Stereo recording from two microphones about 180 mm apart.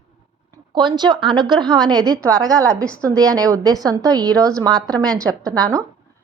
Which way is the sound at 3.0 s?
20° right (ahead or behind).